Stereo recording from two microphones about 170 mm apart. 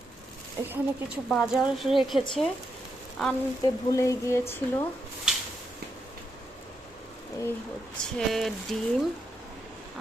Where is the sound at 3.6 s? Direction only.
20° left (ahead or behind).